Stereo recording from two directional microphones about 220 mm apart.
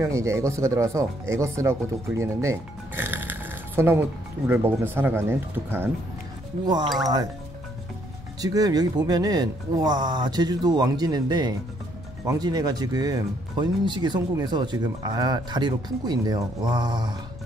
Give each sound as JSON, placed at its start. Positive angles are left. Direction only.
{"t": 0.0, "sound": "speech", "side_deg": -15}
{"t": 8.4, "sound": "speech", "side_deg": -15}